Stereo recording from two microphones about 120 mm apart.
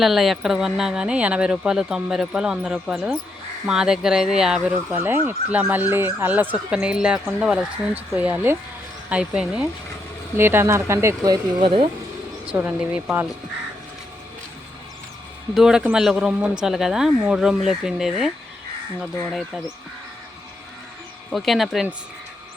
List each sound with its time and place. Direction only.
0.0 s speech: centre (ahead or behind)
4.7 s speech: 15° right (ahead or behind)
10.3 s speech: 20° right (ahead or behind)
12.5 s speech: 15° right (ahead or behind)
15.5 s speech: 5° right (ahead or behind)
19.3 s speech: centre (ahead or behind)
21.3 s speech: centre (ahead or behind)